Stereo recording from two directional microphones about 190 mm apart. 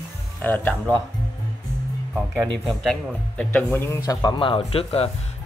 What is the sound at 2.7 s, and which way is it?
Speech, 5° left (ahead or behind).